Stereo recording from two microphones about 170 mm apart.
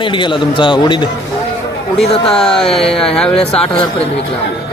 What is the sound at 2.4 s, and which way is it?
Speech, 5° left (ahead or behind).